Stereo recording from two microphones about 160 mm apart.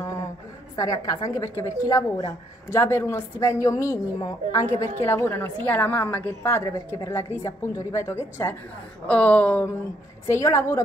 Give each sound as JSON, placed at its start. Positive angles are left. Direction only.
{"t": 0.7, "sound": "a woman's voice", "side_deg": 20}